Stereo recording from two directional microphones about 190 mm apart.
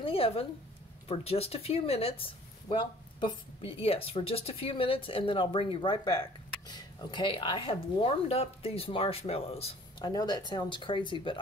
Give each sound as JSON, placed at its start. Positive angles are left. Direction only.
{"t": 0.0, "sound": "speech", "side_deg": 30}